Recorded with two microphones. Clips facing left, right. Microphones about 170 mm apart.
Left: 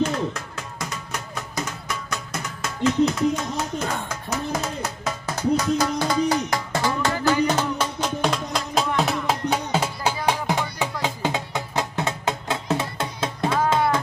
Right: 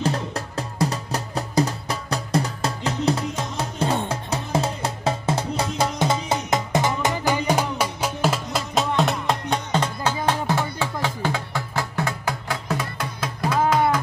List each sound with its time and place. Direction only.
0.0 s music: 35° right (ahead or behind); by 13.7 s 25° left (ahead or behind)